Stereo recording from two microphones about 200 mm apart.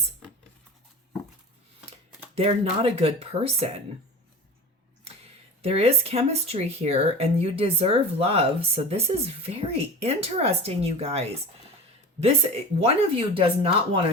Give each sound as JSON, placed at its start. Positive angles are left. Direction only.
{"t": 2.3, "sound": "speech", "side_deg": -30}
{"t": 5.2, "sound": "speech", "side_deg": -30}
{"t": 12.8, "sound": "speech", "side_deg": -30}